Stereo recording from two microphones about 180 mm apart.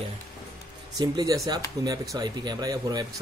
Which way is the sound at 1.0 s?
20° right (ahead or behind).